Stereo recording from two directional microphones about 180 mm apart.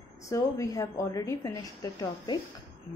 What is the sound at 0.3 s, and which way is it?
A woman's voice, 20° left (ahead or behind).